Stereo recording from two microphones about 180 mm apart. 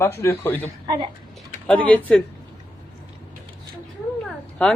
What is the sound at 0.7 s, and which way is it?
Speech, 20° right (ahead or behind).